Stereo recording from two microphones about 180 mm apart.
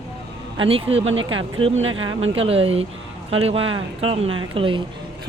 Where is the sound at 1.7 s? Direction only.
90° right.